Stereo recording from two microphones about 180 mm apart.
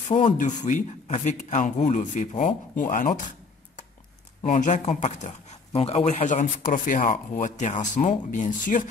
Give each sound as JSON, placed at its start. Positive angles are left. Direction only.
{"t": 0.1, "sound": "speech", "side_deg": 40}